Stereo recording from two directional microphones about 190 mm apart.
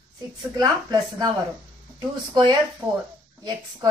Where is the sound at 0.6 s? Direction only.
20° right (ahead or behind).